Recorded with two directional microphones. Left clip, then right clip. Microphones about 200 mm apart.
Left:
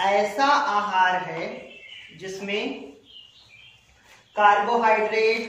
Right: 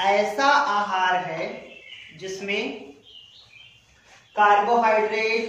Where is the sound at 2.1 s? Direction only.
15° right (ahead or behind).